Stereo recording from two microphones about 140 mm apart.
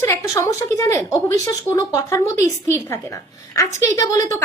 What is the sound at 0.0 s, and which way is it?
A woman's voice, 20° left (ahead or behind).